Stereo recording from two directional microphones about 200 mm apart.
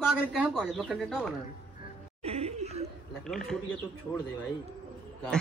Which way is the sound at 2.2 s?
30° right (ahead or behind).